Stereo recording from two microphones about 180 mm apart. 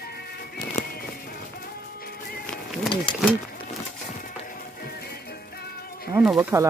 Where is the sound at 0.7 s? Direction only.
55° left (ahead or behind).